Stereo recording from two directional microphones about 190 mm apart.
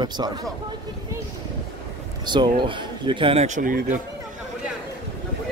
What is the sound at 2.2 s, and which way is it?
Speech, 25° right (ahead or behind).